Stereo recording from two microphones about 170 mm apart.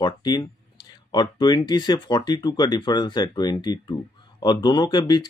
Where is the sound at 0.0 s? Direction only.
25° left (ahead or behind).